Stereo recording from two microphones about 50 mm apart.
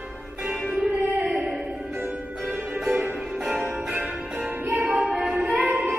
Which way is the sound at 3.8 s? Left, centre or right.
Right.